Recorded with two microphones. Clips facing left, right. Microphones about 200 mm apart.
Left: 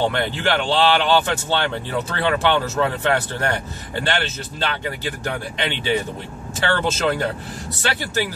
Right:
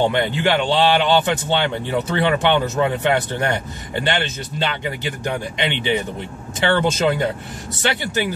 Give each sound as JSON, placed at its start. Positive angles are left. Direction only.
{"t": 0.0, "sound": "a man's voice", "side_deg": -15}